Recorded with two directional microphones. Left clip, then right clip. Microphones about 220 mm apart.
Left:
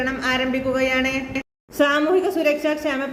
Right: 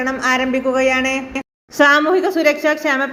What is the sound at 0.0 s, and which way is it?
A woman's voice, 20° right (ahead or behind).